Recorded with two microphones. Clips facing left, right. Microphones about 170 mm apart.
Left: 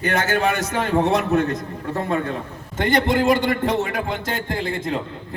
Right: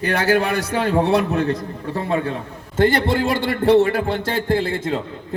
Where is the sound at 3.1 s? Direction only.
30° right (ahead or behind).